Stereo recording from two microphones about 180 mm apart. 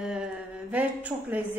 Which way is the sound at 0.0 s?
5° right (ahead or behind).